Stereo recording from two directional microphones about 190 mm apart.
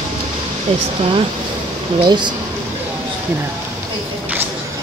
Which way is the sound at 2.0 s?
25° right (ahead or behind).